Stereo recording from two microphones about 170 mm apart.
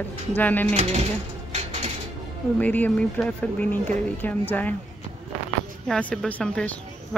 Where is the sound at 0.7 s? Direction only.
40° right (ahead or behind).